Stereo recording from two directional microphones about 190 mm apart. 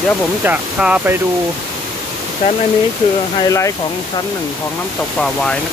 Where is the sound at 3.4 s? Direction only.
15° left (ahead or behind).